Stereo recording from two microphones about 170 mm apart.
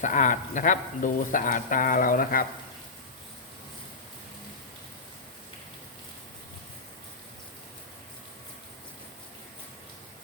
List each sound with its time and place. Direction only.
0.0 s speech: 50° left (ahead or behind)